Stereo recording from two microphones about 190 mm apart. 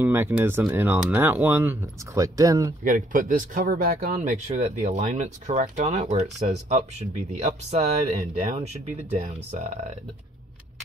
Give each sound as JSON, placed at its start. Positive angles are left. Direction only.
{"t": 0.0, "sound": "speech", "side_deg": -10}
{"t": 2.8, "sound": "speech", "side_deg": -45}